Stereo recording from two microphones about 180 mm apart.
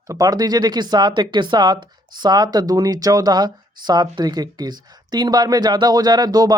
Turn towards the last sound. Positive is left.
turn(degrees=-20)  # may be behind; listen again after turning